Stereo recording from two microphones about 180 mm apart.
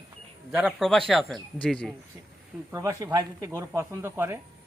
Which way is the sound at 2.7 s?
15° right (ahead or behind).